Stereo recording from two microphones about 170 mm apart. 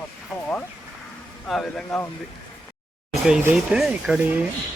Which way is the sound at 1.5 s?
5° left (ahead or behind).